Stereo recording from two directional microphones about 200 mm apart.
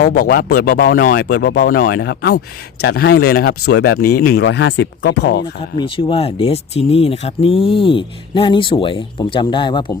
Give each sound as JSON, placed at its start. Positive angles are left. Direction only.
{"t": 0.3, "sound": "speech", "side_deg": 45}
{"t": 4.0, "sound": "speech", "side_deg": 50}
{"t": 5.7, "sound": "speech", "side_deg": 25}